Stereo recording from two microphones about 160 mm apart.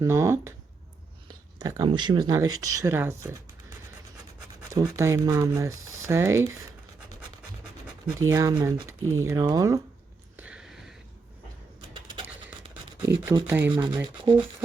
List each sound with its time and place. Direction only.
0.0 s speech: 15° right (ahead or behind)
1.5 s speech: 20° right (ahead or behind)
4.7 s speech: 20° right (ahead or behind)
8.2 s speech: 20° right (ahead or behind)
10.3 s a sound: 5° right (ahead or behind)
11.9 s mechanisms: 30° right (ahead or behind)
13.1 s speech: 20° right (ahead or behind)
13.5 s speech: 10° right (ahead or behind)
13.7 s speech: 25° right (ahead or behind)